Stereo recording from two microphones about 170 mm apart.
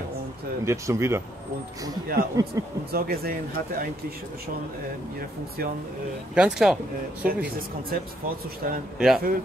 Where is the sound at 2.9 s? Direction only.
65° right (ahead or behind).